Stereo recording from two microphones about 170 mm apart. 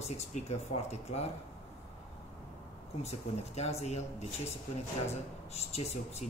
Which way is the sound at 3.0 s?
40° left (ahead or behind).